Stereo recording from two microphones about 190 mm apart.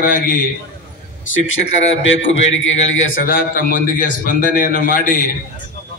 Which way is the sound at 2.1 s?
80° left.